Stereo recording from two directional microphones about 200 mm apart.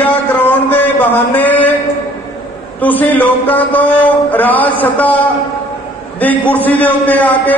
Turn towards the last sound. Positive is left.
turn(degrees=10)  # may be behind; listen again after turning